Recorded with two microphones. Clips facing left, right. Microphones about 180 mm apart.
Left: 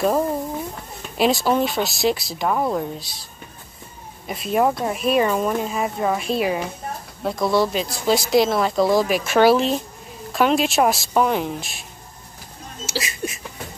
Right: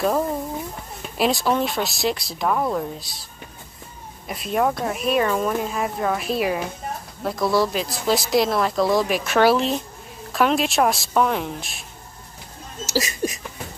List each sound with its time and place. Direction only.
1.1 s speech: centre (ahead or behind)
4.3 s speech: centre (ahead or behind)
12.8 s speech: 40° right (ahead or behind)